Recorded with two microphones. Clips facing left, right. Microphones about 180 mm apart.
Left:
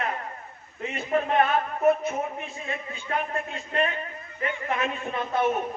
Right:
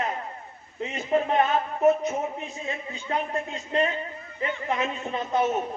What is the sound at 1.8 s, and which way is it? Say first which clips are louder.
A man's voice: right 2 dB; 20° right (ahead or behind).